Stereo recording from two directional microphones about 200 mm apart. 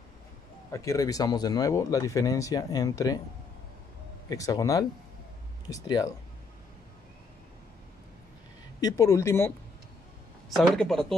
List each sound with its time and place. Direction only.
0.7 s speech: 15° left (ahead or behind)
4.3 s speech: 15° left (ahead or behind)
8.8 s speech: 15° left (ahead or behind)
10.5 s speech: centre (ahead or behind)